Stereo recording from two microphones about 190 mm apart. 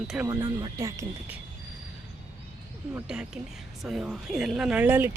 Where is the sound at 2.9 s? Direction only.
5° right (ahead or behind).